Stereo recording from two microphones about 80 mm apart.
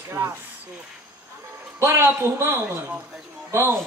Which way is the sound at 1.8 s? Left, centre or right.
Right.